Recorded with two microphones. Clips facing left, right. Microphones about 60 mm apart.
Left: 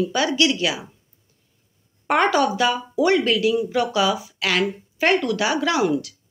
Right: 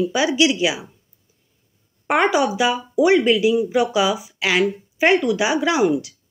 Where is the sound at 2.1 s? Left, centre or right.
Centre.